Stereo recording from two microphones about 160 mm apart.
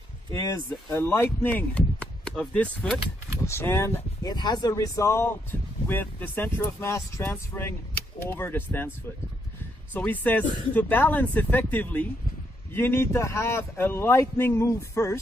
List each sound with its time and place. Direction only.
0.3 s speech: 15° left (ahead or behind)
9.9 s speech: 10° left (ahead or behind)